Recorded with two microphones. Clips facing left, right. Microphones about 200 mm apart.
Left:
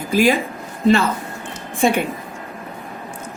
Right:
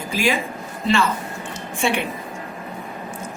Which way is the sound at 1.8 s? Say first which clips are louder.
Left 5 dB; 40° left (ahead or behind).